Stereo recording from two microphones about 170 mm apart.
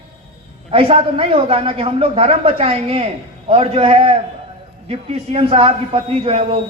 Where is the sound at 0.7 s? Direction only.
35° right (ahead or behind).